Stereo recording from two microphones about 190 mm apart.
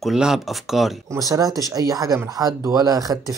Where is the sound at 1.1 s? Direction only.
20° right (ahead or behind).